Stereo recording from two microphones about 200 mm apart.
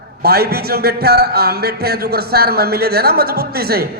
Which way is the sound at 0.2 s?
50° right (ahead or behind).